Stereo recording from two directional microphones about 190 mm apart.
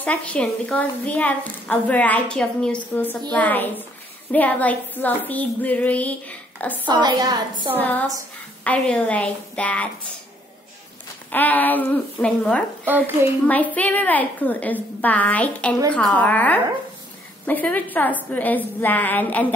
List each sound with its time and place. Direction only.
0.0 s a woman's voice: 10° left (ahead or behind)
6.9 s a woman's voice: 20° right (ahead or behind)
7.8 s a woman's voice: 10° left (ahead or behind)
11.2 s a woman's voice: 10° left (ahead or behind)
12.8 s a woman's voice: 10° right (ahead or behind)
13.5 s a woman's voice: 10° left (ahead or behind)